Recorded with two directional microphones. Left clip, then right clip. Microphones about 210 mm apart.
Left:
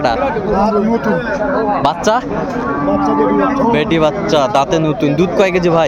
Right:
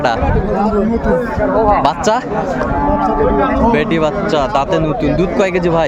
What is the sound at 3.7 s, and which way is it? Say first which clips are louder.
Speech: left 1 dB; 5° left (ahead or behind).